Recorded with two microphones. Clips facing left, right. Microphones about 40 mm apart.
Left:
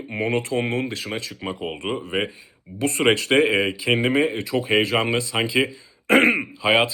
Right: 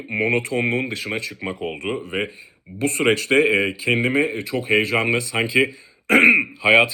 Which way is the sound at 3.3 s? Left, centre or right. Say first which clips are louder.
Right 1 dB; centre.